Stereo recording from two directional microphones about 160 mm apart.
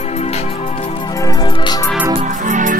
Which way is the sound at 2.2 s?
50° right (ahead or behind).